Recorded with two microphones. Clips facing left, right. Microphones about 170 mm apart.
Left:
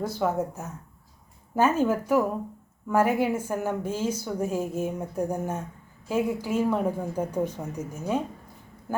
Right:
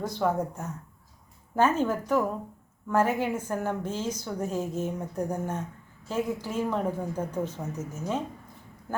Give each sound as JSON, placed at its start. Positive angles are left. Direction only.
{"t": 0.0, "sound": "a woman's voice", "side_deg": 5}